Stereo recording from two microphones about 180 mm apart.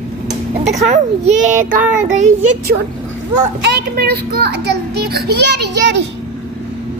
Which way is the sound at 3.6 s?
60° right (ahead or behind).